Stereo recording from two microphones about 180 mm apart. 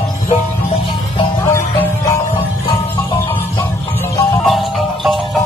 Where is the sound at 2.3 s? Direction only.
30° left (ahead or behind).